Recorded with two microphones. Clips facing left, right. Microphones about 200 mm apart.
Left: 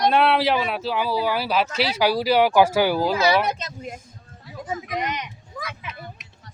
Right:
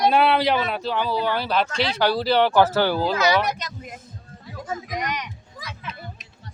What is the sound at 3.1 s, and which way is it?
Speech, 30° left (ahead or behind).